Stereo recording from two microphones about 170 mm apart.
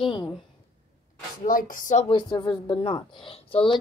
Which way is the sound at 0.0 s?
30° left (ahead or behind).